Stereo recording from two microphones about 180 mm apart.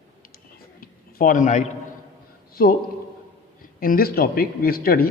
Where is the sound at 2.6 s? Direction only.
55° left (ahead or behind).